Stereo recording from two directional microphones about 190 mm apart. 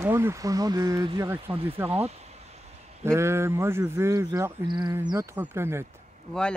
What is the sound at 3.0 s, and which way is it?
Speech, 15° right (ahead or behind).